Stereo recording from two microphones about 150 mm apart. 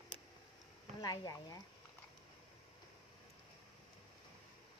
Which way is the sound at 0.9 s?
25° left (ahead or behind).